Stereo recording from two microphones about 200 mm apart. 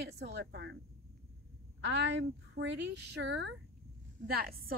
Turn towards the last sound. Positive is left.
turn(degrees=-50)  # may be behind; listen again after turning